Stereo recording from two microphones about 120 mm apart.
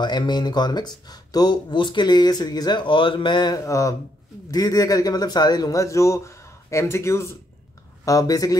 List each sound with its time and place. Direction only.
0.0 s a man's voice: 35° left (ahead or behind)